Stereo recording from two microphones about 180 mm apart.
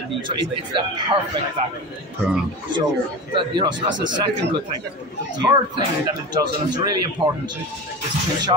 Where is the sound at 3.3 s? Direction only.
25° right (ahead or behind).